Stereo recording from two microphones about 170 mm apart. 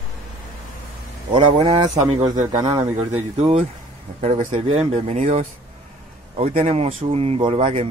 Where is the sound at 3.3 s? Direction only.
40° right (ahead or behind).